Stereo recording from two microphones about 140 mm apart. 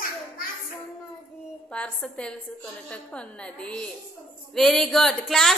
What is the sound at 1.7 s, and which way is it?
A woman's voice, 10° left (ahead or behind).